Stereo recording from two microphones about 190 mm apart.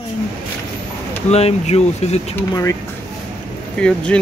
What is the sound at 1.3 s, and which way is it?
Speech, 35° left (ahead or behind).